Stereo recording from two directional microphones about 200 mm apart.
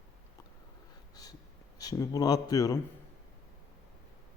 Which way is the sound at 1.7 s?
15° left (ahead or behind).